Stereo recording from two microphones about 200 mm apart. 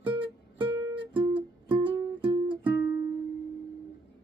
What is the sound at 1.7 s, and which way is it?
Music, 25° right (ahead or behind).